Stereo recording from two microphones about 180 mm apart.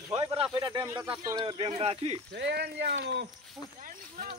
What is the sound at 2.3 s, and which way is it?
Speech, 70° right (ahead or behind).